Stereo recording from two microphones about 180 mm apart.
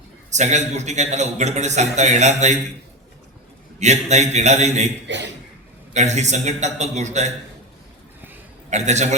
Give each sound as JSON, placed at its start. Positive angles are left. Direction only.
{"t": 0.3, "sound": "a man's voice", "side_deg": -40}
{"t": 3.8, "sound": "a man's voice", "side_deg": -40}
{"t": 5.0, "sound": "a man's voice", "side_deg": -85}
{"t": 5.9, "sound": "a man's voice", "side_deg": -40}
{"t": 8.7, "sound": "a man's voice", "side_deg": -40}